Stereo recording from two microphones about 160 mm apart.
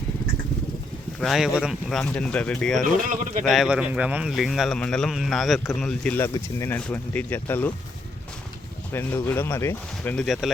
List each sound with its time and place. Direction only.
1.2 s speech: centre (ahead or behind)
8.9 s speech: 15° left (ahead or behind)
10.2 s speech: centre (ahead or behind)